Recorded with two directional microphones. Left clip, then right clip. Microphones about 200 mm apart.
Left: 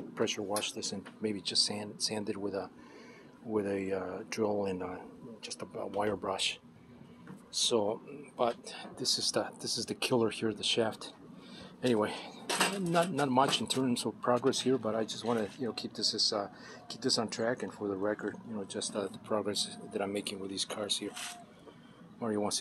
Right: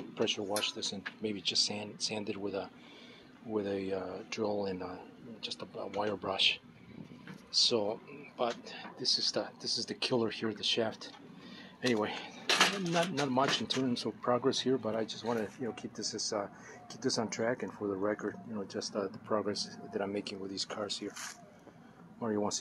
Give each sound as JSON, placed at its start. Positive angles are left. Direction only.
{"t": 0.2, "sound": "speech", "side_deg": 10}
{"t": 7.7, "sound": "speech", "side_deg": 15}
{"t": 15.8, "sound": "speech", "side_deg": 20}
{"t": 16.9, "sound": "speech", "side_deg": -5}
{"t": 22.2, "sound": "speech", "side_deg": 0}